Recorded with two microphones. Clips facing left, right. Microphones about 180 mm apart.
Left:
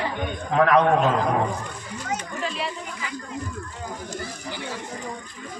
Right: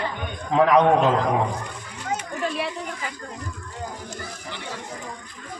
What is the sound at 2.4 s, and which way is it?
Speech, 55° right (ahead or behind).